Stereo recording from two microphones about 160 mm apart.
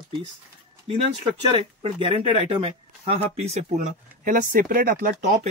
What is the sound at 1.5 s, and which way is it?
Speech, 35° right (ahead or behind).